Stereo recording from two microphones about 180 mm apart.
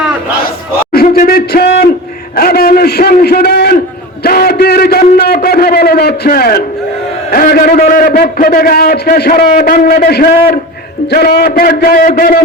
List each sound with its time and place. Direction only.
0.9 s a man's voice: 55° left (ahead or behind)